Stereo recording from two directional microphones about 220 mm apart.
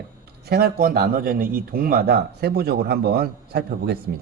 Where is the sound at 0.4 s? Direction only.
45° right (ahead or behind).